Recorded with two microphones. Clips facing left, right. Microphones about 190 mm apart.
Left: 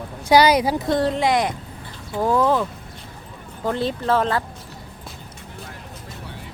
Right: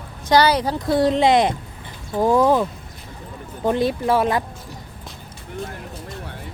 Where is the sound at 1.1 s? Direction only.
25° right (ahead or behind).